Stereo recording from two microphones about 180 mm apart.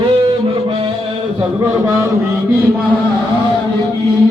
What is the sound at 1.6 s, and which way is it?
Speech, 15° right (ahead or behind).